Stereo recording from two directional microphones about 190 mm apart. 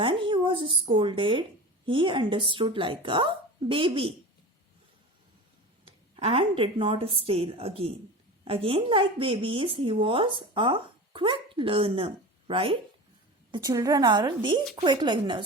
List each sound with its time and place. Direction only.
0.0 s a sound: 25° right (ahead or behind)
0.9 s speech: 25° right (ahead or behind)
5.8 s a woman's voice: 30° right (ahead or behind)